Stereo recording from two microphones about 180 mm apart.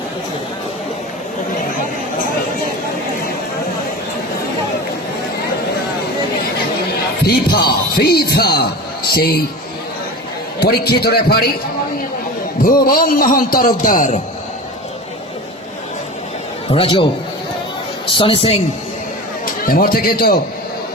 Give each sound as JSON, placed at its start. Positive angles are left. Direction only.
{"t": 7.3, "sound": "a man's voice", "side_deg": 60}
{"t": 10.6, "sound": "a man's voice", "side_deg": 60}
{"t": 12.6, "sound": "a man's voice", "side_deg": 55}
{"t": 16.6, "sound": "a woman's voice", "side_deg": 30}
{"t": 18.1, "sound": "a woman's voice", "side_deg": 30}
{"t": 19.6, "sound": "a man's voice", "side_deg": 55}